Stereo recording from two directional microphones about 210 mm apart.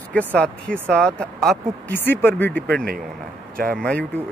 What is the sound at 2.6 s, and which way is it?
Speech, 45° right (ahead or behind).